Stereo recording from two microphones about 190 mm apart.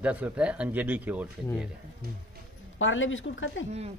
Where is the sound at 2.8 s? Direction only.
90° left.